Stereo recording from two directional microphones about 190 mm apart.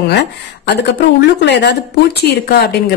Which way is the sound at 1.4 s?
65° left (ahead or behind).